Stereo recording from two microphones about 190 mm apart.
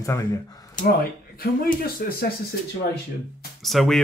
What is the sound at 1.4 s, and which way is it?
Speech, 55° left (ahead or behind).